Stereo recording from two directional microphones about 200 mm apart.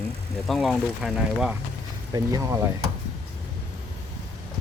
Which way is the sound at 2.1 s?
15° right (ahead or behind).